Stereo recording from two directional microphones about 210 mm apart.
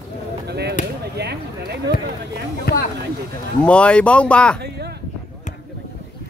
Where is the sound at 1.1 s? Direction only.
50° right (ahead or behind).